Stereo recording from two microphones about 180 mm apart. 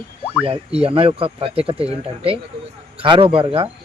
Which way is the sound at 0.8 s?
30° right (ahead or behind).